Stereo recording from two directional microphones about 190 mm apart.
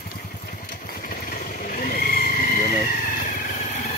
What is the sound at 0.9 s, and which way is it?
Vehicle, 50° left (ahead or behind).